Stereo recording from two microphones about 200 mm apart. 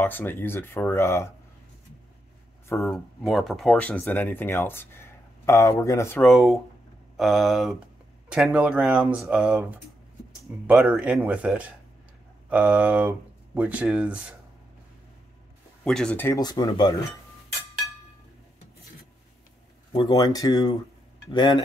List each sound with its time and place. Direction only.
0.0 s speech: 10° left (ahead or behind)
2.8 s speech: centre (ahead or behind)
6.2 s speech: centre (ahead or behind)
15.8 s speech: 5° left (ahead or behind); by 16.9 s 20° left (ahead or behind)
19.9 s speech: 25° left (ahead or behind)